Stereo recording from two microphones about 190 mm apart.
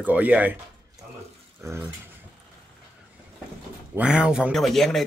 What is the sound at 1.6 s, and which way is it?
Speech, 15° right (ahead or behind).